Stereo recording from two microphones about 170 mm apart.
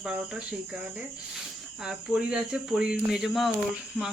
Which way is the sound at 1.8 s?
5° right (ahead or behind).